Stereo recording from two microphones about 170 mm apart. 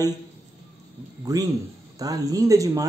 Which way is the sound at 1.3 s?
20° right (ahead or behind).